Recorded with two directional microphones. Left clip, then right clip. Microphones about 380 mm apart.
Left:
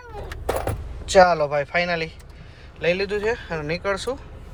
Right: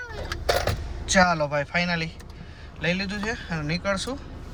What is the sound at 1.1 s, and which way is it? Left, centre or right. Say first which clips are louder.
Speech: left 5 dB; centre.